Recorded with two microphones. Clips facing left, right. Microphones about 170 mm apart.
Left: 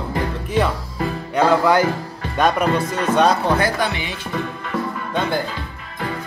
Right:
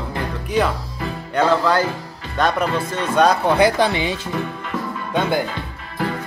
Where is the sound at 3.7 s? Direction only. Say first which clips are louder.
Right 4 dB; 25° right (ahead or behind).